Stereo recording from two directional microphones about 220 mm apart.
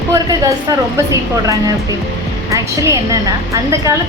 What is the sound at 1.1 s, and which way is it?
A woman's voice, 15° right (ahead or behind).